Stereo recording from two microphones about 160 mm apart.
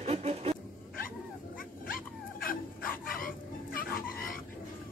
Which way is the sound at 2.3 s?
60° left (ahead or behind).